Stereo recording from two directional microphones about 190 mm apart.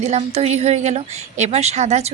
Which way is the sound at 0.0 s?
35° right (ahead or behind).